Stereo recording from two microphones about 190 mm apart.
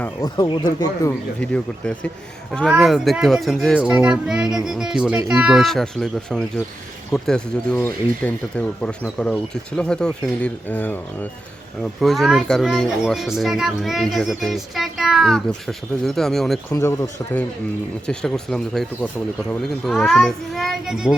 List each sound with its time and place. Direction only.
0.2 s speech: 20° left (ahead or behind)
1.4 s a child's voice: 5° left (ahead or behind)
16.7 s speech: 15° left (ahead or behind)
18.0 s a child's voice: 5° left (ahead or behind)